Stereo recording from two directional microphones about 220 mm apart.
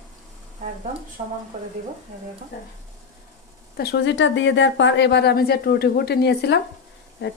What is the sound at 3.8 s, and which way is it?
Speech, 50° left (ahead or behind).